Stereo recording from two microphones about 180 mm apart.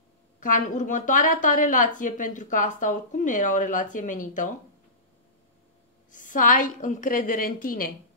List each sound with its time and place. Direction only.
0.4 s a woman's voice: 45° left (ahead or behind)
6.1 s a woman's voice: 45° left (ahead or behind)